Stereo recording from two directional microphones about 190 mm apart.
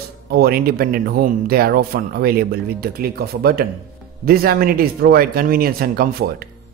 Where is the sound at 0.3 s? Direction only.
55° right (ahead or behind).